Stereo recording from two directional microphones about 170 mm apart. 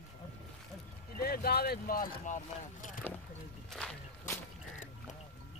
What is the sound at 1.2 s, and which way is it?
Speech, 60° left (ahead or behind).